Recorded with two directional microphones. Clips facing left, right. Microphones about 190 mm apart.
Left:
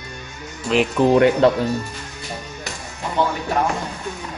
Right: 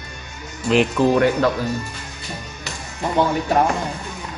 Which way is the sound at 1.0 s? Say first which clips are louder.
Left 6 dB; 20° left (ahead or behind).